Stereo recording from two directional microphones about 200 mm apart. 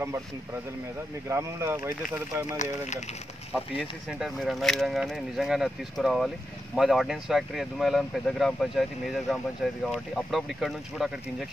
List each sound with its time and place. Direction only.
1.3 s speech: 15° right (ahead or behind)
2.5 s speech: 35° left (ahead or behind)
4.1 s speech: centre (ahead or behind)